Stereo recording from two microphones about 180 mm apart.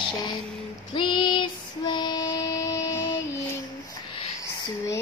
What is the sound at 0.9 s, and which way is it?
Female singing, 30° left (ahead or behind).